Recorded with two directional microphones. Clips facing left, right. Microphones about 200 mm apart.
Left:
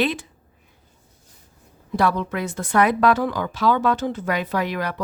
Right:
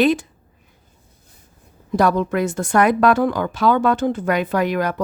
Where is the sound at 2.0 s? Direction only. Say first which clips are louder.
Right 5 dB; 45° right (ahead or behind).